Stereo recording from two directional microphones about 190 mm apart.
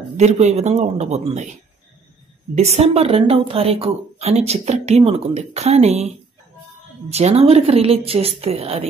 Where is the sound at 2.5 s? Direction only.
35° right (ahead or behind).